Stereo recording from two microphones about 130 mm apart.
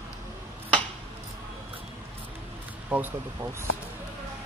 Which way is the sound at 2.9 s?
15° right (ahead or behind).